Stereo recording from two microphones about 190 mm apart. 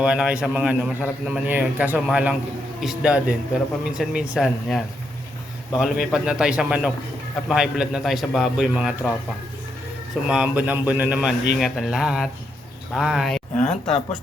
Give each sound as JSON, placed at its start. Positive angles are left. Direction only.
{"t": 0.0, "sound": "a man's voice", "side_deg": -5}
{"t": 10.2, "sound": "a man's voice", "side_deg": -5}
{"t": 13.7, "sound": "speech", "side_deg": 30}